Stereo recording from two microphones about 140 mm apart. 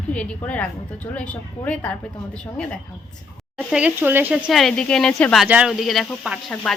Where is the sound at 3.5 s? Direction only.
10° right (ahead or behind).